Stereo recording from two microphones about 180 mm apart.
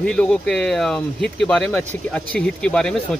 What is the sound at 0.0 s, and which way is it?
Speech, 5° left (ahead or behind).